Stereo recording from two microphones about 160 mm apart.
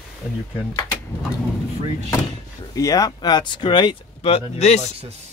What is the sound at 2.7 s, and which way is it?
Speech, 20° left (ahead or behind).